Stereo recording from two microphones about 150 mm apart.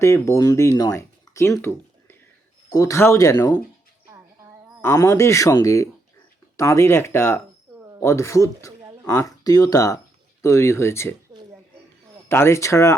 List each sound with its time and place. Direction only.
0.0 s speech: 20° left (ahead or behind)
4.8 s speech: 20° left (ahead or behind)
11.3 s a sound: 30° right (ahead or behind)
12.3 s speech: 15° left (ahead or behind)